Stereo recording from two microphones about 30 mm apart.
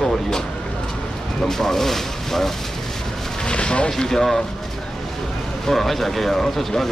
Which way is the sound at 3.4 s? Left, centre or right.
Left.